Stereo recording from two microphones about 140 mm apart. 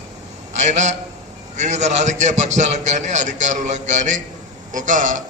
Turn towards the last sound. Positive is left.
turn(degrees=-65)  # may be behind; listen again after turning